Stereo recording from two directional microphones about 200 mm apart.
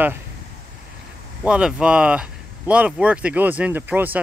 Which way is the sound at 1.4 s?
5° right (ahead or behind).